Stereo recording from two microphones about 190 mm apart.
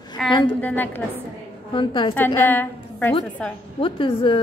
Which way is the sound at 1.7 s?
25° left (ahead or behind).